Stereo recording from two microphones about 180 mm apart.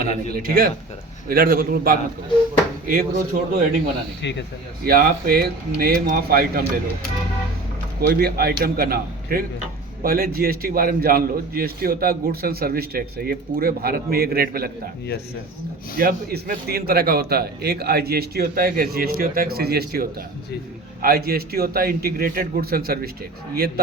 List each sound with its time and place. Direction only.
0.3 s a man's voice: 55° right (ahead or behind)
4.2 s speech: 75° left (ahead or behind)
4.8 s a man's voice: 55° right (ahead or behind)
8.0 s a man's voice: 60° right (ahead or behind)
16.0 s a man's voice: 55° right (ahead or behind)